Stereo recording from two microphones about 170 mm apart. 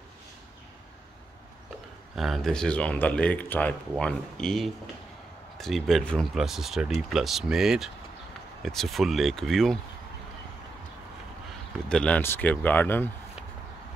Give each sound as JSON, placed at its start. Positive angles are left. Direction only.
{"t": 2.1, "sound": "speech", "side_deg": 0}
{"t": 11.9, "sound": "speech", "side_deg": 5}